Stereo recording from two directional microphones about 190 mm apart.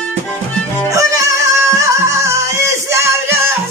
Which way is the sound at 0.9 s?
15° right (ahead or behind).